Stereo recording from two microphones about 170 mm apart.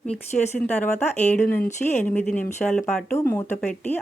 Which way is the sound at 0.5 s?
10° left (ahead or behind).